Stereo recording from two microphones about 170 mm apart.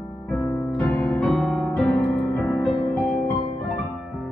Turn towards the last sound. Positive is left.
turn(degrees=0)  # may be behind; listen again after turning